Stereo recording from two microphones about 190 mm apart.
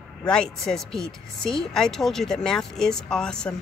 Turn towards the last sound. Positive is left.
turn(degrees=5)  # may be behind; listen again after turning